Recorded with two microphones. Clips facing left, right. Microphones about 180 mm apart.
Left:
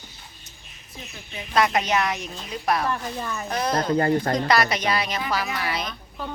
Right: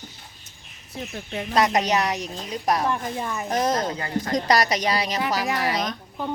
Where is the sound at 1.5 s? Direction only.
40° right (ahead or behind).